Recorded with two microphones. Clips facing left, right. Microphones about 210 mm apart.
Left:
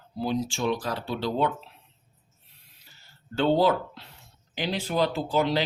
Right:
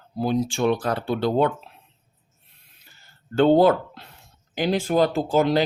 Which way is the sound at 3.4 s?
55° right (ahead or behind).